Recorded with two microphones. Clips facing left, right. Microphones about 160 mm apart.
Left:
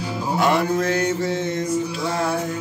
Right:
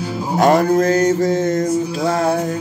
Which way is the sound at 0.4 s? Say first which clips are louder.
Right 7 dB; 40° right (ahead or behind).